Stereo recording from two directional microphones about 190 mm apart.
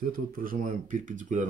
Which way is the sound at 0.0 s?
45° right (ahead or behind).